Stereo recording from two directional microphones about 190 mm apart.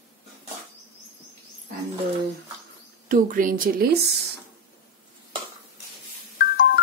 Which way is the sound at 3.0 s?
45° right (ahead or behind).